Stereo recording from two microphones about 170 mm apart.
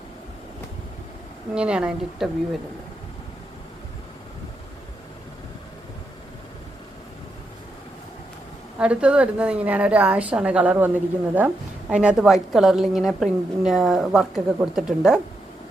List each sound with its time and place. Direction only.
1.5 s a woman's voice: 5° right (ahead or behind)
8.8 s a woman's voice: 5° right (ahead or behind)